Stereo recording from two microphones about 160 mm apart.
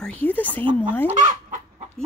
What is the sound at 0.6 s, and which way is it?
Speech, 30° right (ahead or behind).